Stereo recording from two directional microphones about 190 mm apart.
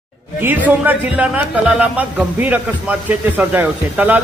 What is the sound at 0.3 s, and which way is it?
A man's voice, 10° right (ahead or behind).